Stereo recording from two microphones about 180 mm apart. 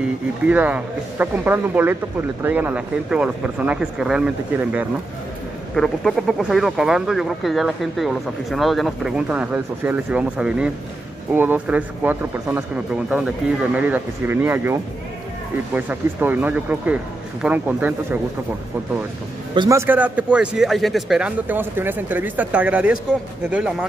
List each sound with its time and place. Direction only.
0.5 s speech: 10° right (ahead or behind)
19.5 s a man's voice: 25° right (ahead or behind)
19.9 s speech: 10° right (ahead or behind)